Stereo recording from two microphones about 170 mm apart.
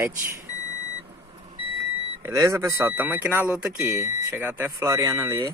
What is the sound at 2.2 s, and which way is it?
Speech, 20° right (ahead or behind).